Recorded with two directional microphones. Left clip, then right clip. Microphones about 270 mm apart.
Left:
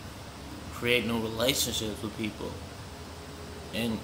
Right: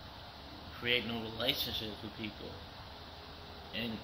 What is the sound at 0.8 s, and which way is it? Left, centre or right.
A man's voice, left.